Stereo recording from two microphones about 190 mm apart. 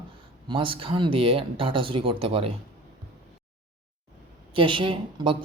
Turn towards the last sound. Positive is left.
turn(degrees=-25)  # may be behind; listen again after turning